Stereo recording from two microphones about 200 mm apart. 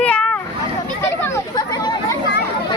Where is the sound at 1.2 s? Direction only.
20° left (ahead or behind).